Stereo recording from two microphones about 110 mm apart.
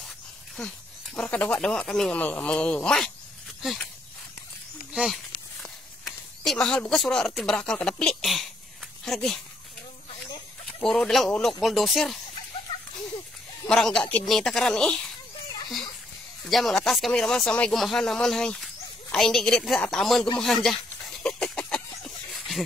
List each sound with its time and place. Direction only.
0.6 s speech: 10° left (ahead or behind)
4.9 s speech: 5° right (ahead or behind)
10.8 s speech: 5° left (ahead or behind)
13.7 s speech: 5° left (ahead or behind)
16.4 s speech: centre (ahead or behind)
20.3 s a sound: 5° left (ahead or behind)